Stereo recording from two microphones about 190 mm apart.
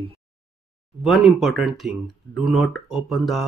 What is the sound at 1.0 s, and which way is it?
Speech, centre (ahead or behind).